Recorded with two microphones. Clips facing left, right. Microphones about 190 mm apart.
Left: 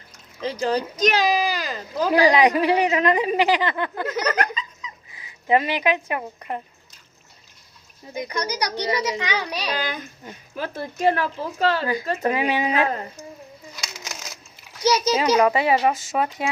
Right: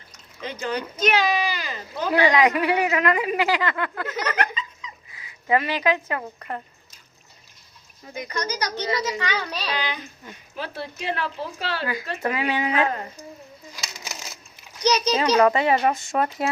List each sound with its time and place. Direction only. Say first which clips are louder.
0.4 s speech: left 5 dB; 35° left (ahead or behind)
5.1 s speech: left 2 dB; 25° left (ahead or behind)
8.2 s a child's voice: left 2 dB; 15° left (ahead or behind)
9.7 s speech: left 1 dB; 45° left (ahead or behind)
12.2 s speech: left 1 dB; 20° left (ahead or behind)
12.7 s speech: left 1 dB; 30° left (ahead or behind)
14.0 s a sound: left 1 dB; 10° right (ahead or behind)
14.8 s a child's voice: left 1 dB; 10° left (ahead or behind)